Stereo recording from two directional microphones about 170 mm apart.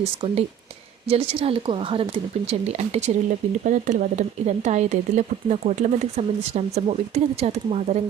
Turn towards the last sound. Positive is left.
turn(degrees=-40)  # may be behind; listen again after turning